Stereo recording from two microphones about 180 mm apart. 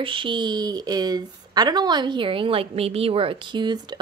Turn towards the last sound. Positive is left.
turn(degrees=-25)  # may be behind; listen again after turning